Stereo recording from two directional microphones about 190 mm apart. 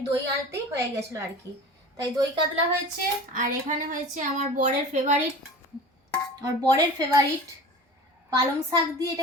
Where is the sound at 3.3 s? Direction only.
45° right (ahead or behind).